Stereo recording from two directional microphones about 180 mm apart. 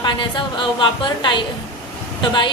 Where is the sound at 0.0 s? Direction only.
25° left (ahead or behind).